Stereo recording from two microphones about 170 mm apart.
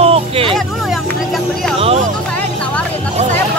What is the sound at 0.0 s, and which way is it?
Hubbub, 35° right (ahead or behind).